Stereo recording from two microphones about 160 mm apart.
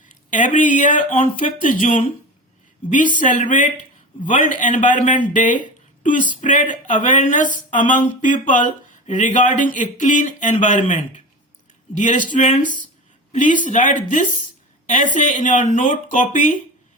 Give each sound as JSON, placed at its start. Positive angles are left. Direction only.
{"t": 0.0, "sound": "speech", "side_deg": 55}